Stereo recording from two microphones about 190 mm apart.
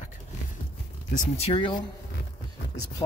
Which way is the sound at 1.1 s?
35° left (ahead or behind).